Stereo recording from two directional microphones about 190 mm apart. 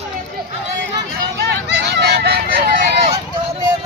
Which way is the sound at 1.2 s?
60° right (ahead or behind).